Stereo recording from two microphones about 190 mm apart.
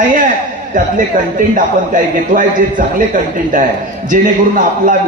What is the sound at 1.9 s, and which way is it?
A man's voice, 45° right (ahead or behind).